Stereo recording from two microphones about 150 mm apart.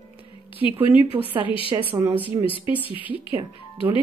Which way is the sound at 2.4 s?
35° left (ahead or behind).